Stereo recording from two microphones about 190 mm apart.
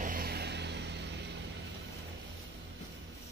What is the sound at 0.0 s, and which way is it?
Vehicle, 50° right (ahead or behind).